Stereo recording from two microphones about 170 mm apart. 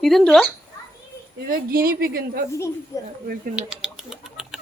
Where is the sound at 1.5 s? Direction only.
60° right (ahead or behind).